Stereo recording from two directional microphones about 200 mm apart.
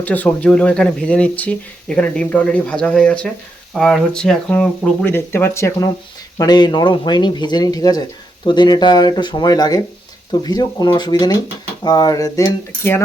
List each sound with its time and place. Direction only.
0.0 s speech: 10° left (ahead or behind)